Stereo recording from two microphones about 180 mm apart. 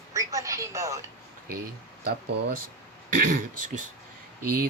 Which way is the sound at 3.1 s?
45° right (ahead or behind).